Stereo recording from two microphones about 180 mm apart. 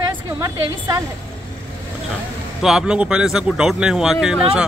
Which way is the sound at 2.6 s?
5° right (ahead or behind).